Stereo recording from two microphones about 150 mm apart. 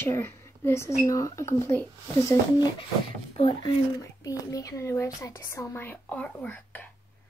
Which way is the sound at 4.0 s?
25° left (ahead or behind).